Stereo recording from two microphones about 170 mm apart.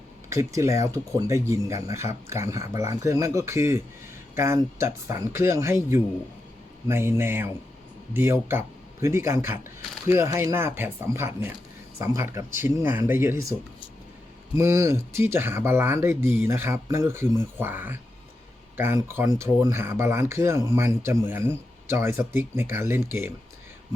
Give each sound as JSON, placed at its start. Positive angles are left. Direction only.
{"t": 0.3, "sound": "speech", "side_deg": -15}
{"t": 14.6, "sound": "speech", "side_deg": -15}